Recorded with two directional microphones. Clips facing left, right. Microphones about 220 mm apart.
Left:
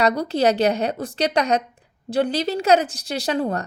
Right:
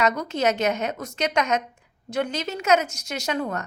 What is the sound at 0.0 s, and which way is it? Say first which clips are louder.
A woman's voice: left 4 dB; 35° left (ahead or behind).